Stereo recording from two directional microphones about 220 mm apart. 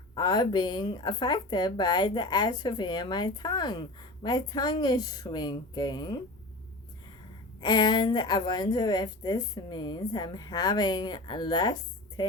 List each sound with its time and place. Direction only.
0.1 s speech: 20° left (ahead or behind)
7.6 s speech: 20° left (ahead or behind)